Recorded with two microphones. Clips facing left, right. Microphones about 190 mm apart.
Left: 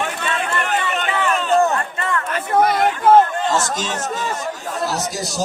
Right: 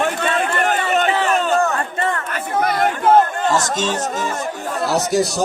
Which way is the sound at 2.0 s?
35° right (ahead or behind).